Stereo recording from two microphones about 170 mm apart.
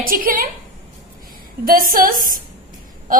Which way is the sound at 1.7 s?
55° right (ahead or behind).